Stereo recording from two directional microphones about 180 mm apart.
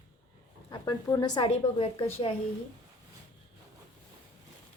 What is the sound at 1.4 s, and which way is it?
Speech, 30° left (ahead or behind).